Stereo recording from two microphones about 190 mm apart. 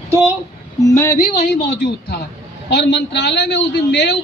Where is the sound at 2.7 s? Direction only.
65° left (ahead or behind).